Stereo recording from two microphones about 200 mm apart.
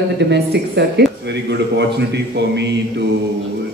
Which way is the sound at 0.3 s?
55° right (ahead or behind).